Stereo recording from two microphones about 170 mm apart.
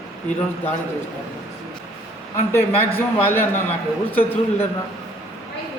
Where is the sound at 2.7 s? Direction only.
35° left (ahead or behind).